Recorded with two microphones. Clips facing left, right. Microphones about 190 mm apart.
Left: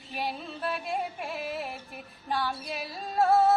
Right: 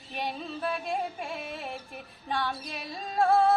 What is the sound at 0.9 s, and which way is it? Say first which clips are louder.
Female singing: even; 5° left (ahead or behind).